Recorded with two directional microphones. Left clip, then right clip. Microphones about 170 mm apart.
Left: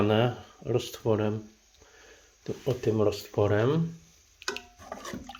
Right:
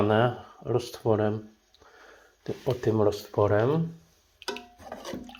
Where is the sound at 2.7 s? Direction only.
Centre (ahead or behind).